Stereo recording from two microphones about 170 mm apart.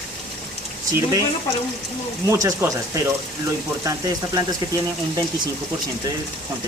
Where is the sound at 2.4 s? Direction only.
20° right (ahead or behind).